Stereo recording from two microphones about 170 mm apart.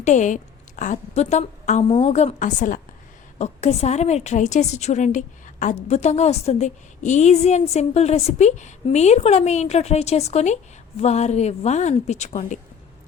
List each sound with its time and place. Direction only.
0.0 s a woman's voice: 45° left (ahead or behind)